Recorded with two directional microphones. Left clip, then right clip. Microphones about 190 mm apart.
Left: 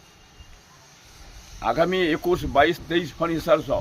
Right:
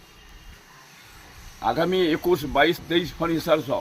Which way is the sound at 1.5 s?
Centre (ahead or behind).